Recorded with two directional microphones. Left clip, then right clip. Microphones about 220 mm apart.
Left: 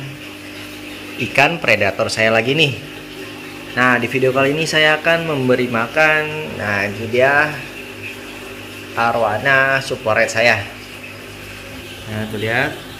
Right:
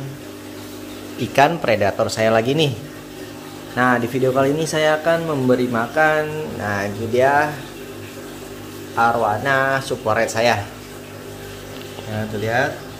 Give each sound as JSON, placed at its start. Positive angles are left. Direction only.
{"t": 1.3, "sound": "speech", "side_deg": -5}
{"t": 3.7, "sound": "speech", "side_deg": 0}
{"t": 8.9, "sound": "speech", "side_deg": 5}